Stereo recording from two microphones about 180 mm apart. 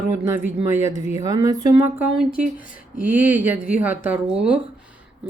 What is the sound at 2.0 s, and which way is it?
Speech, 5° right (ahead or behind).